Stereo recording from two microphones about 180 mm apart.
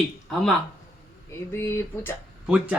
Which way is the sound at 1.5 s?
15° left (ahead or behind).